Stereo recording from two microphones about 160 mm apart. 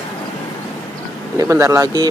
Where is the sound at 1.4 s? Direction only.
20° right (ahead or behind).